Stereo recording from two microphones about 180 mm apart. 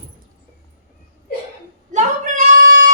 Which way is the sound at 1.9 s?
45° right (ahead or behind).